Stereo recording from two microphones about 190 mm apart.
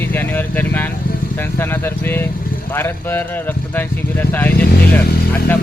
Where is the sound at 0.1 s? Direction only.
10° left (ahead or behind).